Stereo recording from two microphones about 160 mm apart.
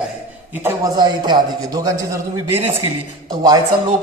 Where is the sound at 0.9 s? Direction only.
25° right (ahead or behind).